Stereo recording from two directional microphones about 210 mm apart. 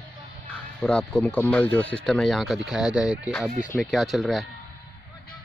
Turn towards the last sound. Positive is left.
turn(degrees=0)  # may be behind; listen again after turning